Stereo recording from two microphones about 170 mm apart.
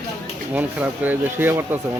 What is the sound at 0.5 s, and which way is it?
Speech, 10° right (ahead or behind).